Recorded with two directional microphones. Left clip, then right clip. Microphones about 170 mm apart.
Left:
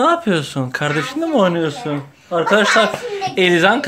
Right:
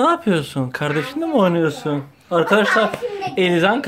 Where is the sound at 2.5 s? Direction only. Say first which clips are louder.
Left 4 dB; 5° right (ahead or behind).